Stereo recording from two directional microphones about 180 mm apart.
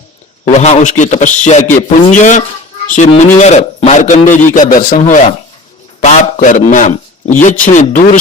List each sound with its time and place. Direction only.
0.4 s a man's voice: 40° left (ahead or behind)